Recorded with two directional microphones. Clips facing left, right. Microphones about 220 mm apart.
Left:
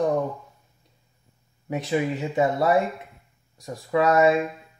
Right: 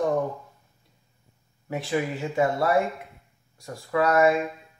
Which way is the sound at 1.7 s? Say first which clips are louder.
Left 2 dB; 20° left (ahead or behind).